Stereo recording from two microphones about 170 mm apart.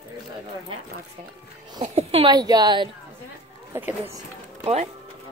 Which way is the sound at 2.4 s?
25° right (ahead or behind).